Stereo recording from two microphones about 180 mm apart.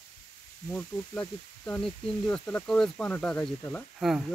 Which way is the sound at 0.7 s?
10° left (ahead or behind).